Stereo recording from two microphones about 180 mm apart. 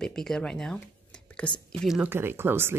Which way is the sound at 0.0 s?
5° left (ahead or behind).